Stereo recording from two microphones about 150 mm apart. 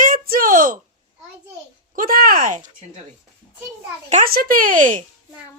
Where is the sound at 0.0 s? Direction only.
70° right (ahead or behind).